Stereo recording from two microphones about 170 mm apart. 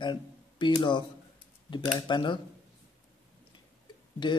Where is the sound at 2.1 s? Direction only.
30° left (ahead or behind).